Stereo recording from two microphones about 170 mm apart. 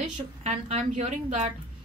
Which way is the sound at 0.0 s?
40° right (ahead or behind).